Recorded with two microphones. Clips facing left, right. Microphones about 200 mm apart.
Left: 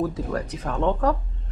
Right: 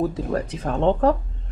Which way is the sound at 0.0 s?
25° right (ahead or behind).